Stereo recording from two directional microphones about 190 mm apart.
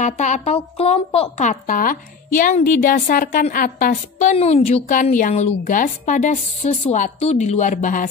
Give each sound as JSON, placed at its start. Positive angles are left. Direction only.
{"t": 0.0, "sound": "a woman's voice", "side_deg": 40}